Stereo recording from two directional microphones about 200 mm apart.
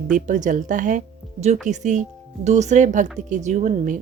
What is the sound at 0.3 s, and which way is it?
Speech, 40° right (ahead or behind).